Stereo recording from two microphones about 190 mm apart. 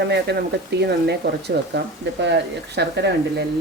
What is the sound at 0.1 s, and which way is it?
Speech, 60° right (ahead or behind).